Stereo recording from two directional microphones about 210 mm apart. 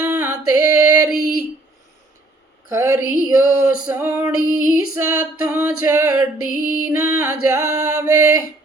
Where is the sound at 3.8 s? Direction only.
10° right (ahead or behind).